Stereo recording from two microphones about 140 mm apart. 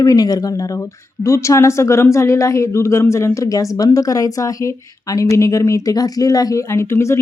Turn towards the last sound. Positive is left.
turn(degrees=20)  # may be behind; listen again after turning